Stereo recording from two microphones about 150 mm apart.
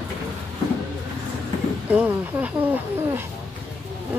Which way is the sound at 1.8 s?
10° right (ahead or behind).